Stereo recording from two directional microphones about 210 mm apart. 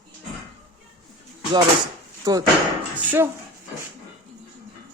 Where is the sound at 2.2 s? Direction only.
15° right (ahead or behind).